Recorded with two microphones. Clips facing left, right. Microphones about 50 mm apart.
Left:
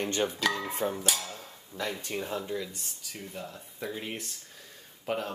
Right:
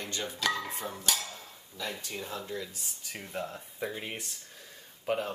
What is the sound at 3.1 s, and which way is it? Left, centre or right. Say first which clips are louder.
Speech: right 3 dB; right.